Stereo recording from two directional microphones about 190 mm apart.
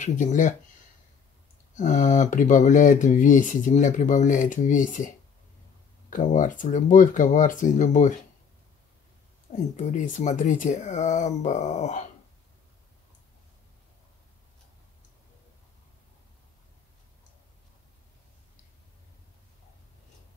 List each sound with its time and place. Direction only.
0.0 s speech: 40° left (ahead or behind)
1.8 s speech: 40° left (ahead or behind)
9.5 s speech: 40° left (ahead or behind)